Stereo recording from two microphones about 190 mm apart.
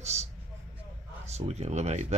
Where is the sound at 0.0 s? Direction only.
35° right (ahead or behind).